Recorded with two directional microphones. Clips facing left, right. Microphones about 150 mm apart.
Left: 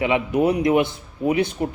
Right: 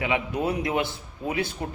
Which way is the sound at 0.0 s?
20° left (ahead or behind).